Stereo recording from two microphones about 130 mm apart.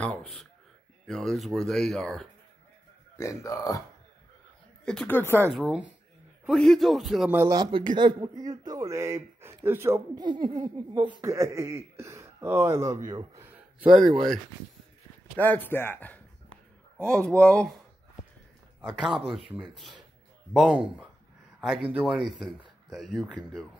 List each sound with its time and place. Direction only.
0.0 s speech: 5° left (ahead or behind)
3.2 s speech: 25° left (ahead or behind)
4.8 s speech: 10° left (ahead or behind)
5.6 s speech: 5° right (ahead or behind)
7.4 s speech: 30° right (ahead or behind)
10.2 s speech: 35° right (ahead or behind)
13.4 s a sound: 10° right (ahead or behind)
15.3 s speech: 15° left (ahead or behind)
18.8 s speech: centre (ahead or behind)